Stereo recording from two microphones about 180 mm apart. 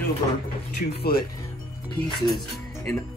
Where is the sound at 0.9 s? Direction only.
60° left (ahead or behind).